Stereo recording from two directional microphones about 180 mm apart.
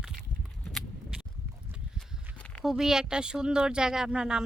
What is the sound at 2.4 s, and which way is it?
Speech, 5° left (ahead or behind).